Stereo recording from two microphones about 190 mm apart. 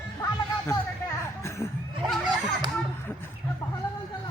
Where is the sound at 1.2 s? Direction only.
15° left (ahead or behind).